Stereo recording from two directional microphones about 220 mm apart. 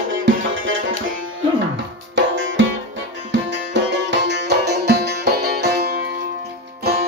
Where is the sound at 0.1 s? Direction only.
60° right (ahead or behind).